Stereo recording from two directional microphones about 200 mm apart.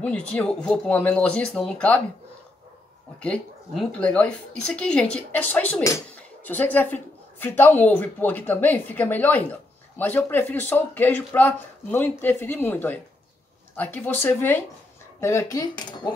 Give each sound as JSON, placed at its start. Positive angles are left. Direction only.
{"t": 0.0, "sound": "speech", "side_deg": 5}
{"t": 3.2, "sound": "a woman's voice", "side_deg": 5}